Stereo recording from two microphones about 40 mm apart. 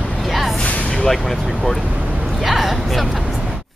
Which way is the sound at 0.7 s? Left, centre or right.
Left.